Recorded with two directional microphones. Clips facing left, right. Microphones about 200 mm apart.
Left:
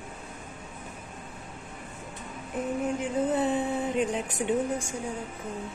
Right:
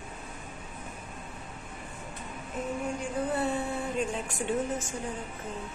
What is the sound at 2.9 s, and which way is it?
Speech, 20° left (ahead or behind).